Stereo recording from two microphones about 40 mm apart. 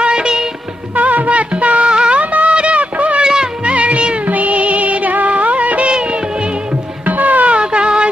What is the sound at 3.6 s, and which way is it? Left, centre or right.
Music, right.